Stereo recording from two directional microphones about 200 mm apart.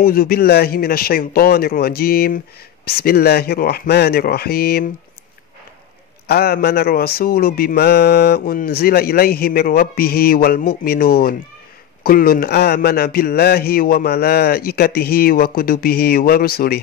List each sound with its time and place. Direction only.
0.0 s speech: 45° left (ahead or behind)
6.2 s speech: 50° left (ahead or behind)